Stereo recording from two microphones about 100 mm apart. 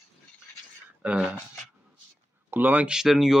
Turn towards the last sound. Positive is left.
turn(degrees=-5)  # may be behind; listen again after turning